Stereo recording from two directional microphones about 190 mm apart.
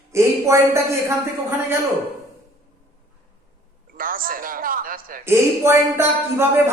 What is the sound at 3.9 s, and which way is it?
A man's voice, 50° right (ahead or behind).